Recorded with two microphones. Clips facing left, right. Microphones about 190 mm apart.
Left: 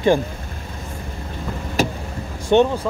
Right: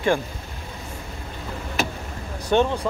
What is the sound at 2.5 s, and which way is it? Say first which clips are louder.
Speech: left 5 dB; 20° left (ahead or behind).